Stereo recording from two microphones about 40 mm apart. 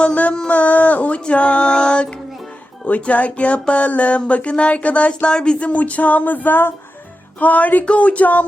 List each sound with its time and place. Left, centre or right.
0.0 s speech: left
0.4 s a sound: left
1.3 s music: left
2.8 s speech: left
5.3 s speech: left
7.3 s speech: left